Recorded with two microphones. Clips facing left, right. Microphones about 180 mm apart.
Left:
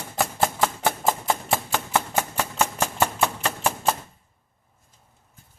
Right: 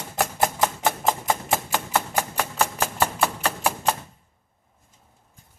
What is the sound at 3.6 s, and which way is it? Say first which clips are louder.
Typewriter: left 1 dB; 10° right (ahead or behind).